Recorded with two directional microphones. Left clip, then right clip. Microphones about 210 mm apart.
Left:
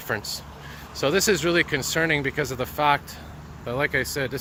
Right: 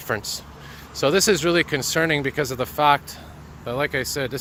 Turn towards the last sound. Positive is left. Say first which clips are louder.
# even
turn(degrees=-20)  # may be behind; listen again after turning